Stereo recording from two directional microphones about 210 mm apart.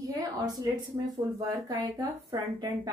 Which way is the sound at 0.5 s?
20° right (ahead or behind).